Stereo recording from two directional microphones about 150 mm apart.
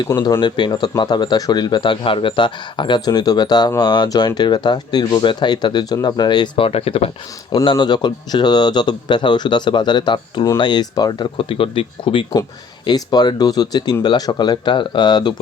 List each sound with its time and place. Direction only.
0.2 s speech: 30° left (ahead or behind)